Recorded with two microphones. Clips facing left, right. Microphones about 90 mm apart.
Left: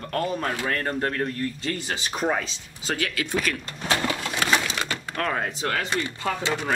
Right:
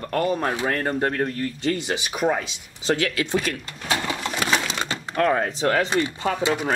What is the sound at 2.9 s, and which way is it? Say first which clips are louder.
Speech: right 4 dB; 25° right (ahead or behind).